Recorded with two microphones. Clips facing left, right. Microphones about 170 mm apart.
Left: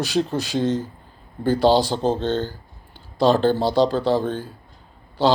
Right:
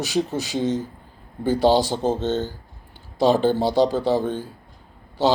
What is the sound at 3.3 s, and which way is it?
Speech, 10° right (ahead or behind).